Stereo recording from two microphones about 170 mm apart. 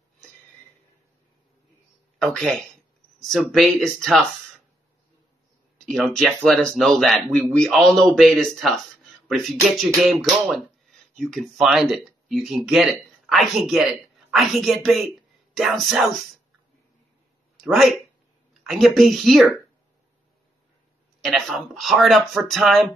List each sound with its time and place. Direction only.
2.1 s speech: 5° left (ahead or behind)
5.9 s speech: centre (ahead or behind)
17.6 s speech: centre (ahead or behind)
21.2 s speech: centre (ahead or behind)